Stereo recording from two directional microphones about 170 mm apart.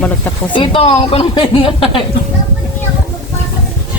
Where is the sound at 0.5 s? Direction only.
30° left (ahead or behind).